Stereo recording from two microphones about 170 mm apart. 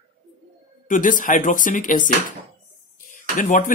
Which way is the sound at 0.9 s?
50° left (ahead or behind).